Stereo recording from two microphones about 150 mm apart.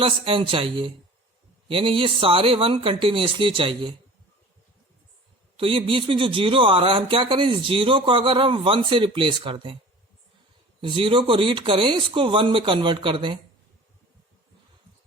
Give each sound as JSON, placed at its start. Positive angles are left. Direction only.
{"t": 0.0, "sound": "speech", "side_deg": -35}
{"t": 5.5, "sound": "speech", "side_deg": -35}
{"t": 10.8, "sound": "speech", "side_deg": -35}